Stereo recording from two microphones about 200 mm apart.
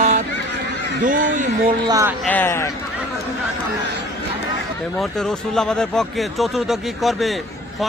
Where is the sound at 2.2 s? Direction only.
10° left (ahead or behind).